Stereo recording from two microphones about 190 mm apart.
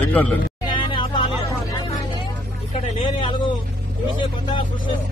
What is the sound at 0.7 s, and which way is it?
Music, 25° left (ahead or behind).